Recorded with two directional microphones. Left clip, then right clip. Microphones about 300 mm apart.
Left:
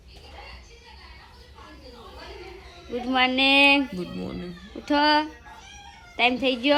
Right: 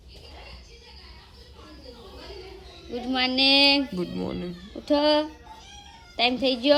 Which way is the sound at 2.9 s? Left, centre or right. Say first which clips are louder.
Left 2 dB; centre.